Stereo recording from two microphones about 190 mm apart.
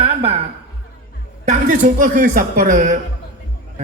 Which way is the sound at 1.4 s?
40° right (ahead or behind).